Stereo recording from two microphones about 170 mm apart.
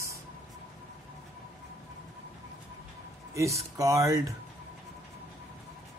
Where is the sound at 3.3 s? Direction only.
20° right (ahead or behind).